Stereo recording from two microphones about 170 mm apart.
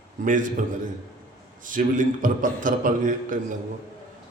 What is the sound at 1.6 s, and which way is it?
A man's voice, 50° right (ahead or behind).